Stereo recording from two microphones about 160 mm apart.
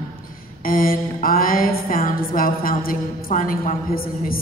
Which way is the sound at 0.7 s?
60° left (ahead or behind).